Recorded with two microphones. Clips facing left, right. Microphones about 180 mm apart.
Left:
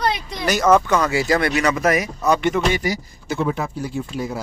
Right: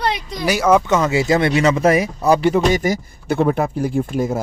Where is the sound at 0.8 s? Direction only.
20° right (ahead or behind).